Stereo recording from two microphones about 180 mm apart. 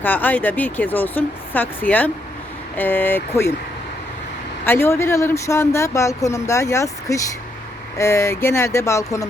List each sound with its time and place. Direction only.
0.0 s speech: 10° left (ahead or behind)
4.6 s speech: 10° left (ahead or behind)